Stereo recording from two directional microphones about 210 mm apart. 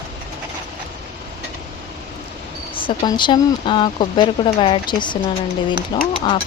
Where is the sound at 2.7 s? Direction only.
25° left (ahead or behind).